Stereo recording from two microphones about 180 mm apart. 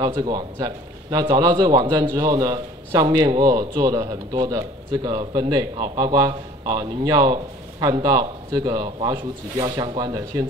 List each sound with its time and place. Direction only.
0.0 s speech: 20° right (ahead or behind)